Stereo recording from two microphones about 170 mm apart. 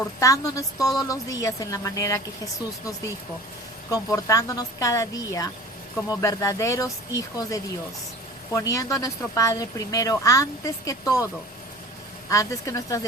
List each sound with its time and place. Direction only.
0.2 s speech: 20° left (ahead or behind)
3.9 s speech: 20° left (ahead or behind)
12.3 s speech: 20° left (ahead or behind)